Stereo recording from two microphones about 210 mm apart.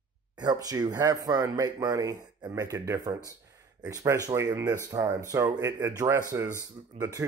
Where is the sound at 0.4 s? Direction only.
15° right (ahead or behind).